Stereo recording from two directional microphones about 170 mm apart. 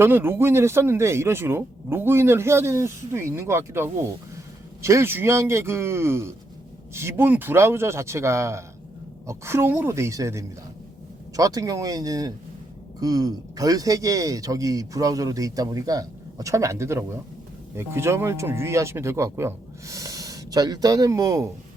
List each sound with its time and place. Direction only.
0.0 s speech: 15° right (ahead or behind)